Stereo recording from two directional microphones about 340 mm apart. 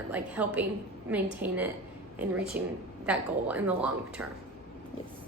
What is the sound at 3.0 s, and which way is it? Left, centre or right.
Speech, centre.